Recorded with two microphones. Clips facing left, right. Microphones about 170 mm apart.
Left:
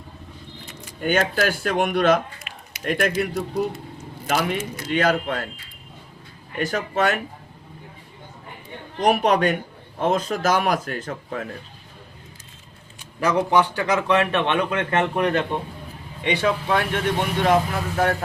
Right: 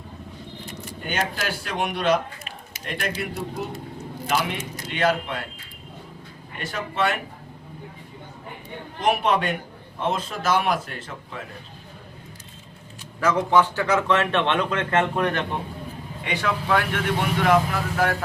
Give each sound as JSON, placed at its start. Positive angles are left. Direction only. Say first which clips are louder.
{"t": 1.0, "sound": "speech", "louder": "left 7 dB", "side_deg": 50}
{"t": 4.3, "sound": "speech", "louder": "left 3 dB", "side_deg": 45}
{"t": 6.6, "sound": "speech", "louder": "left 4 dB", "side_deg": 45}
{"t": 9.0, "sound": "speech", "louder": "left 3 dB", "side_deg": 40}
{"t": 13.1, "sound": "a man's voice", "louder": "even", "side_deg": 15}